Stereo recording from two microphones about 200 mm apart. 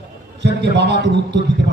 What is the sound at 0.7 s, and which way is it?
Speech, 60° right (ahead or behind).